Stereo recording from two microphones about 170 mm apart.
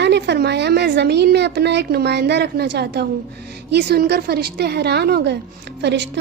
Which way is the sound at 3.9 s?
65° right (ahead or behind).